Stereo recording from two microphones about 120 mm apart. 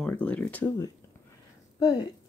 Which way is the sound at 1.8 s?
30° left (ahead or behind).